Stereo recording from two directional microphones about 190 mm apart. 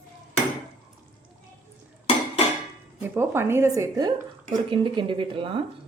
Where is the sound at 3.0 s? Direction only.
15° right (ahead or behind).